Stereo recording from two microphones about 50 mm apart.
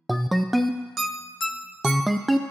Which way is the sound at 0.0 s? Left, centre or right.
Centre.